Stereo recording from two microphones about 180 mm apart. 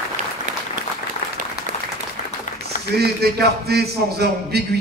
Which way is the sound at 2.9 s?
60° right (ahead or behind).